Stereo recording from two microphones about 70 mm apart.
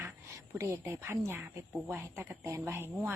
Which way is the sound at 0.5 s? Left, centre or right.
Right.